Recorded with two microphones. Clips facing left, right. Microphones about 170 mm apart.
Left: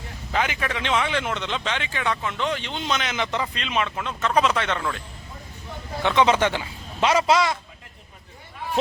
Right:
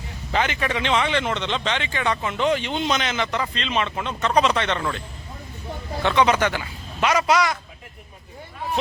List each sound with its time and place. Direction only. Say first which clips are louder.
0.3 s a man's voice: right 2 dB; 5° left (ahead or behind)
6.0 s a man's voice: even; 15° left (ahead or behind)